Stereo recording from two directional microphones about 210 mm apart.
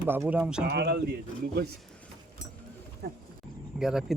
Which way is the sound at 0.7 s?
50° right (ahead or behind).